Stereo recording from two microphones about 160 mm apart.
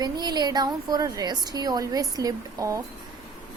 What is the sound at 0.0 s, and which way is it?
Speech, 25° right (ahead or behind).